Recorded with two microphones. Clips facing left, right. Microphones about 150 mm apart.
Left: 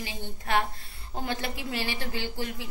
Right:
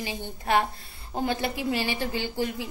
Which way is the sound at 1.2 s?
10° right (ahead or behind).